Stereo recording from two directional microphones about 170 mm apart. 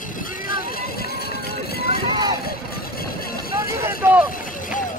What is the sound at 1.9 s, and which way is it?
Run, 25° right (ahead or behind).